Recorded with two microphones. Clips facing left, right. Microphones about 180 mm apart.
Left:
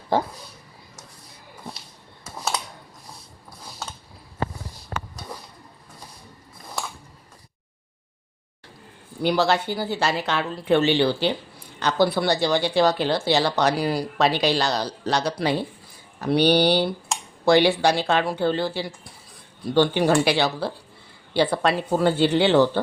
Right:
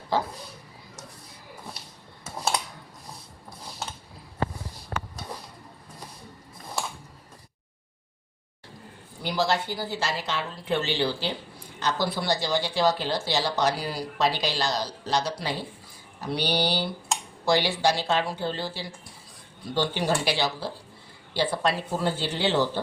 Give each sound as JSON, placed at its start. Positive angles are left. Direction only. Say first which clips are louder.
{"t": 9.2, "sound": "a woman's voice", "louder": "left 5 dB", "side_deg": 65}